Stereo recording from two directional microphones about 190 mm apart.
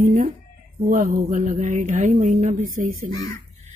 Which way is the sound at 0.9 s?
45° right (ahead or behind).